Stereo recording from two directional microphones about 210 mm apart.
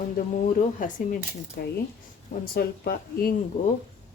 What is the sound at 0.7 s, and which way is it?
Speech, 40° left (ahead or behind).